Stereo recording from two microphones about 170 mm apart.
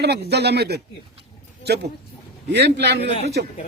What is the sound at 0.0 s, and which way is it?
Speech, 75° right (ahead or behind).